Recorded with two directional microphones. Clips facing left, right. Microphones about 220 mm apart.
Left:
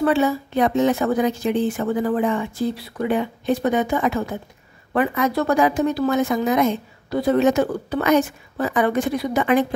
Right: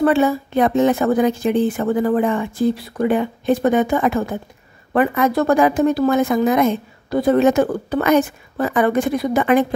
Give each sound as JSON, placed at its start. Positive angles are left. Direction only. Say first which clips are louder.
{"t": 0.0, "sound": "a woman's voice", "louder": "right 3 dB", "side_deg": -55}